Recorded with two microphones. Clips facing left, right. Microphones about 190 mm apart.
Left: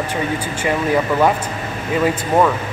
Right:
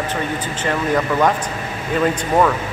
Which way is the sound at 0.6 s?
10° left (ahead or behind).